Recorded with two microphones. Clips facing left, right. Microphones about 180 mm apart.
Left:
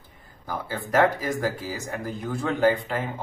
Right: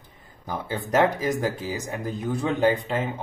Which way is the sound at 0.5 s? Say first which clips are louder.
Right 1 dB; 20° right (ahead or behind).